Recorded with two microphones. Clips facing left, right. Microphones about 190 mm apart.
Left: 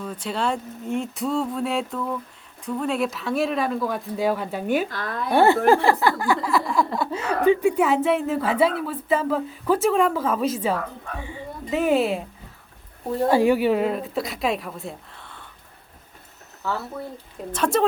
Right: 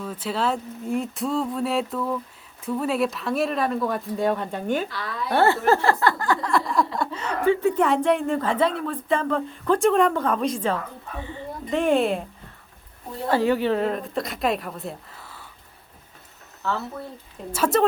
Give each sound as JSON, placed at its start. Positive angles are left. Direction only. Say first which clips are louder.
{"t": 0.0, "sound": "speech", "louder": "even", "side_deg": -5}
{"t": 4.9, "sound": "speech", "louder": "left 2 dB", "side_deg": 50}
{"t": 5.3, "sound": "speech", "louder": "left 3 dB", "side_deg": 15}
{"t": 7.2, "sound": "speech", "louder": "left 3 dB", "side_deg": 15}
{"t": 11.2, "sound": "a sound", "louder": "right 4 dB", "side_deg": 10}
{"t": 13.3, "sound": "speech", "louder": "left 1 dB", "side_deg": 10}
{"t": 17.5, "sound": "speech", "louder": "right 1 dB", "side_deg": -5}